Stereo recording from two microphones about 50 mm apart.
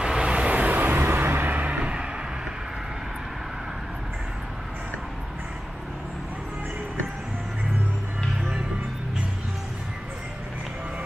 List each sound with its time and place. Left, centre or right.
0.0 s vehicle: right